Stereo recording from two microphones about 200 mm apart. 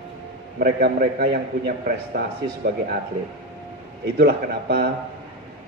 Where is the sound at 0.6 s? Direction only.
50° right (ahead or behind).